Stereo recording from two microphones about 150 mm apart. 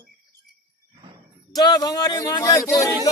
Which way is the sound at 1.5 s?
25° left (ahead or behind).